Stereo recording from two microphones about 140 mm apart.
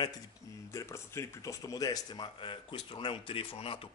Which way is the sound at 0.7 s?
20° left (ahead or behind).